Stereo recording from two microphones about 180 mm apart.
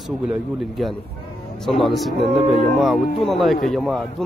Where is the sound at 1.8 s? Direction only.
Centre (ahead or behind).